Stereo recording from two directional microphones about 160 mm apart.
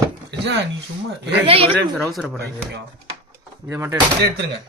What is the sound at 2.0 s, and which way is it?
Speech, centre (ahead or behind).